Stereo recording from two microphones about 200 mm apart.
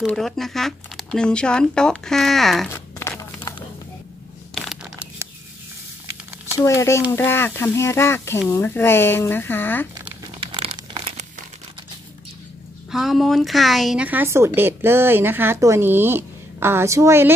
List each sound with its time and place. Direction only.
0.0 s speech: centre (ahead or behind)
3.0 s crumpling: 15° left (ahead or behind)
4.6 s tearing: centre (ahead or behind)
6.6 s speech: 15° left (ahead or behind)
9.9 s crumpling: 25° right (ahead or behind)
12.9 s a woman's voice: centre (ahead or behind)